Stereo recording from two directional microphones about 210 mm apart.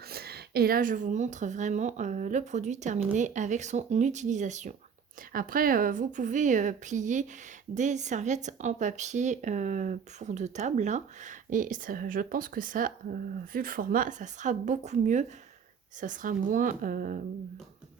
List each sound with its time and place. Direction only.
0.1 s speech: 50° right (ahead or behind)